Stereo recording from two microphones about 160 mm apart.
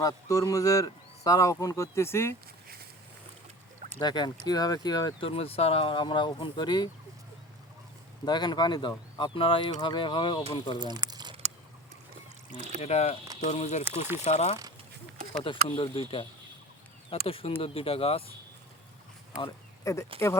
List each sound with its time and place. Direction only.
0.0 s speech: 20° left (ahead or behind)
4.0 s speech: 25° left (ahead or behind)
8.2 s speech: 25° left (ahead or behind)
10.8 s speech: 25° right (ahead or behind)
12.5 s a sound: 50° right (ahead or behind)
12.8 s speech: 40° left (ahead or behind)
13.8 s speech: 15° right (ahead or behind)
14.3 s speech: 45° left (ahead or behind)
15.4 s speech: 30° left (ahead or behind)
19.4 s speech: 25° left (ahead or behind)